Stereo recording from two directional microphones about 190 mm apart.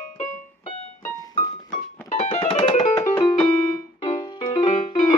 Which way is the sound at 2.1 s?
30° left (ahead or behind).